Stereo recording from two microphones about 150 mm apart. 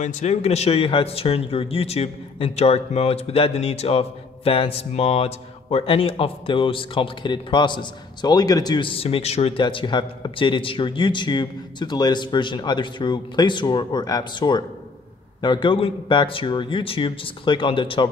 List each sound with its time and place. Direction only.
0.0 s speech: 50° left (ahead or behind); by 18.0 s 35° left (ahead or behind)